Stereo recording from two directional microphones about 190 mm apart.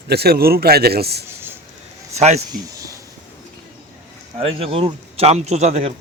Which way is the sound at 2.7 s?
15° right (ahead or behind).